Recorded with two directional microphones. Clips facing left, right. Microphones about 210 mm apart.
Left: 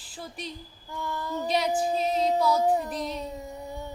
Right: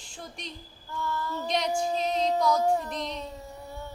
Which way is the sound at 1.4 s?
5° left (ahead or behind).